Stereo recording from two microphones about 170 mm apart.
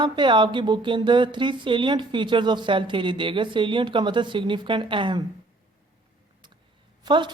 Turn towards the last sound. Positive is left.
turn(degrees=-25)  # may be behind; listen again after turning